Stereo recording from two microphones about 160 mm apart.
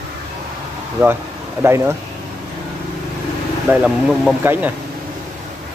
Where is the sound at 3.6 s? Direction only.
5° right (ahead or behind).